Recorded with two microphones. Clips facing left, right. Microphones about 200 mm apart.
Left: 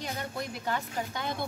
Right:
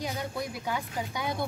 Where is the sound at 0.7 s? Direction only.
10° right (ahead or behind).